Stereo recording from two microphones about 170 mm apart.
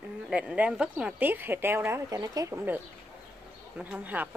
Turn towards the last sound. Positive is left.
turn(degrees=-10)  # may be behind; listen again after turning